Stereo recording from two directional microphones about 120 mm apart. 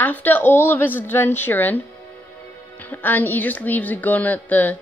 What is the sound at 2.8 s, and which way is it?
A woman's voice, 15° left (ahead or behind).